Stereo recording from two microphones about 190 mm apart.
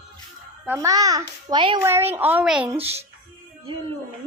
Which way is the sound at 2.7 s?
30° right (ahead or behind).